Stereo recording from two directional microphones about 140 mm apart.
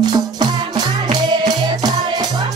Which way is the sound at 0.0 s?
30° right (ahead or behind).